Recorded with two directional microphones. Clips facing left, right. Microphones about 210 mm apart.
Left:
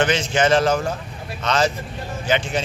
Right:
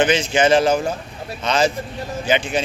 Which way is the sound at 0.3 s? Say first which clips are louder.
Right 2 dB; 15° right (ahead or behind).